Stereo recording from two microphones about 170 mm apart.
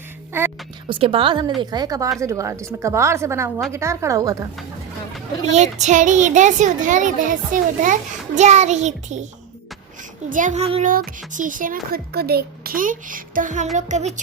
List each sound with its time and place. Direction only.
0.3 s a woman's voice: 15° right (ahead or behind)
0.9 s a woman's voice: 30° right (ahead or behind)
5.8 s speech: 45° right (ahead or behind)
10.2 s speech: 50° right (ahead or behind)
10.9 s speech: 55° right (ahead or behind)